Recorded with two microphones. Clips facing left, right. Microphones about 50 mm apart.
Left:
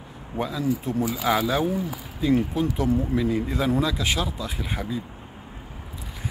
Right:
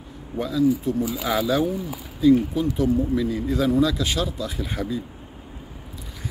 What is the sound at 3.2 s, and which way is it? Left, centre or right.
A man's voice, left.